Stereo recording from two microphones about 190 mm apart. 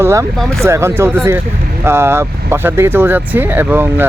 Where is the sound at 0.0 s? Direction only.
15° right (ahead or behind).